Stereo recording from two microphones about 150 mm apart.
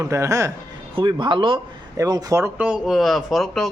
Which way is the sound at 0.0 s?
20° right (ahead or behind).